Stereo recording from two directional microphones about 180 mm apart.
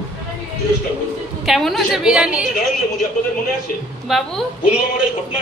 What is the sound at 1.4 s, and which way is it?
A woman's voice, centre (ahead or behind).